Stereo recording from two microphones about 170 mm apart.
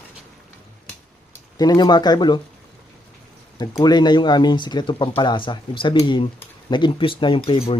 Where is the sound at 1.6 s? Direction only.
25° left (ahead or behind).